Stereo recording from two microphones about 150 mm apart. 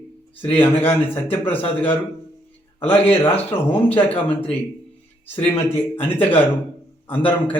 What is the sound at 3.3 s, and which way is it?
Speech, 10° left (ahead or behind).